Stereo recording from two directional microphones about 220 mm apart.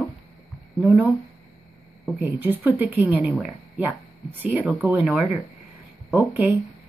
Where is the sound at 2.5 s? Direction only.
10° right (ahead or behind).